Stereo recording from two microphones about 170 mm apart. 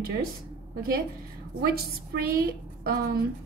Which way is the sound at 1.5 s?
65° right (ahead or behind).